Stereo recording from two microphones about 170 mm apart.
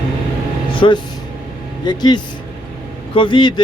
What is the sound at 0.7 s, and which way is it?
Vehicle, 30° left (ahead or behind).